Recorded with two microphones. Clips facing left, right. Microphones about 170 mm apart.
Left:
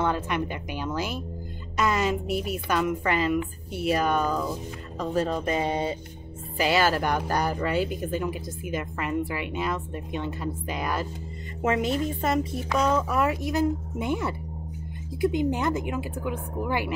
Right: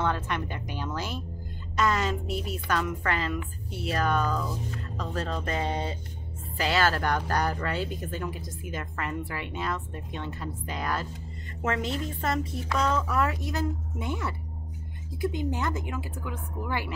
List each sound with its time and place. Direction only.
0.0 s speech: 10° left (ahead or behind)